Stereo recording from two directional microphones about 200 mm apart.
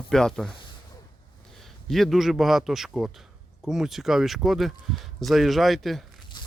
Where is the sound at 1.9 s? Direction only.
Centre (ahead or behind).